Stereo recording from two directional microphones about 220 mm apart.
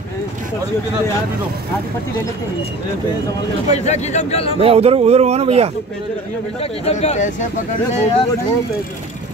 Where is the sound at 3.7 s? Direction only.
30° left (ahead or behind).